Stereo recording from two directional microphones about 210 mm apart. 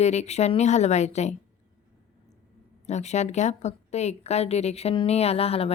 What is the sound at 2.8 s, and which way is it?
A woman's voice, 30° left (ahead or behind).